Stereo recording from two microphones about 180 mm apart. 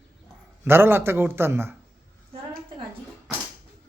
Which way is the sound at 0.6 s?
10° right (ahead or behind).